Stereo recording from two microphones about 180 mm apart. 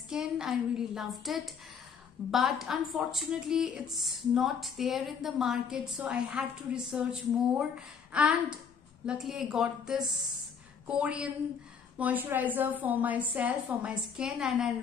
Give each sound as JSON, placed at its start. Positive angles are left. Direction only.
{"t": 0.1, "sound": "a woman's voice", "side_deg": -5}